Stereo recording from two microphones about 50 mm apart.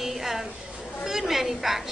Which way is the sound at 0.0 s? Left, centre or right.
Centre.